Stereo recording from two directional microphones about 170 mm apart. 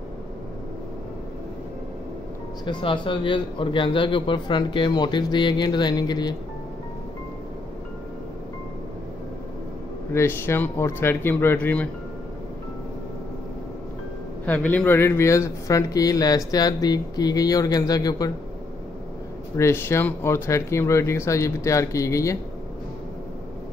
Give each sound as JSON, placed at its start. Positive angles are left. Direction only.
{"t": 2.6, "sound": "speech", "side_deg": 30}
{"t": 10.1, "sound": "speech", "side_deg": 15}
{"t": 14.4, "sound": "speech", "side_deg": 10}
{"t": 19.5, "sound": "speech", "side_deg": 15}